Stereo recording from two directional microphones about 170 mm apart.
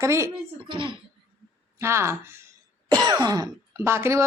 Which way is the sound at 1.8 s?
15° right (ahead or behind).